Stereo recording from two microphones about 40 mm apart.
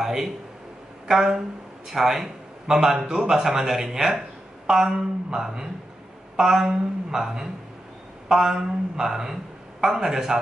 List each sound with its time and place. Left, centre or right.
0.0 s a man's voice: centre